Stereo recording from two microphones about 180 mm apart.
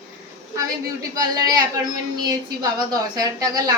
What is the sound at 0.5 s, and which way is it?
A woman's voice, 20° right (ahead or behind).